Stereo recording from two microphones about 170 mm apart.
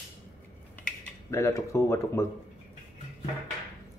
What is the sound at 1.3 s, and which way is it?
Speech, 15° left (ahead or behind).